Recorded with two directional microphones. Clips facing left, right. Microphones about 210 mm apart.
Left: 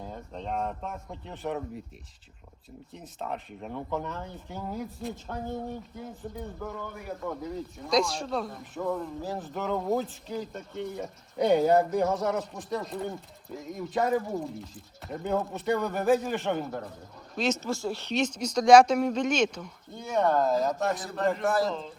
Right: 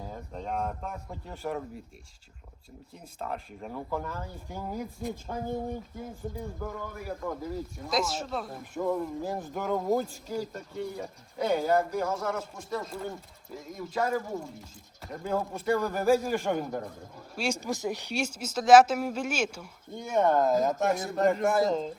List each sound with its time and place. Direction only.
0.0 s speech: 5° right (ahead or behind)
2.9 s speech: centre (ahead or behind)
16.3 s speech: 10° right (ahead or behind)
20.8 s speech: 10° right (ahead or behind)
21.4 s speech: centre (ahead or behind)
21.7 s speech: 40° right (ahead or behind)